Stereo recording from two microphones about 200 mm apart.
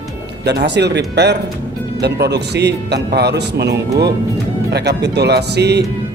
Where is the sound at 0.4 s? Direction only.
55° right (ahead or behind).